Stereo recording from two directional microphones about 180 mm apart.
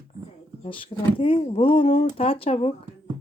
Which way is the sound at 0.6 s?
30° left (ahead or behind).